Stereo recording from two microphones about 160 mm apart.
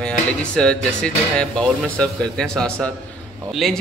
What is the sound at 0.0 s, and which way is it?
A man's voice, 5° left (ahead or behind).